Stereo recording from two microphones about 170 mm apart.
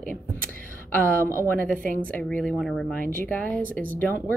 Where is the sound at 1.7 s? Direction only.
55° right (ahead or behind).